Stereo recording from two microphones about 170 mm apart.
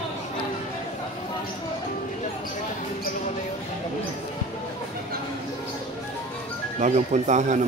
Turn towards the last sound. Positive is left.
turn(degrees=-45)  # may be behind; listen again after turning